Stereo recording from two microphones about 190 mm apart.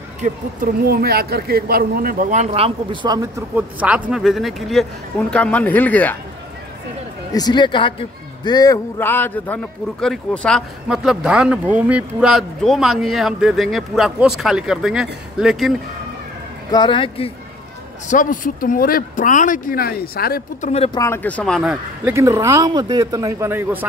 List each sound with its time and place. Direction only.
0.2 s a man's voice: 50° right (ahead or behind); by 6.1 s 10° left (ahead or behind)
7.3 s a man's voice: 20° left (ahead or behind); by 15.7 s centre (ahead or behind)
16.7 s speech: 25° left (ahead or behind)
18.0 s speech: 45° left (ahead or behind)
20.7 s speech: 30° left (ahead or behind)
21.0 s speech: 10° left (ahead or behind)
22.0 s speech: 15° right (ahead or behind)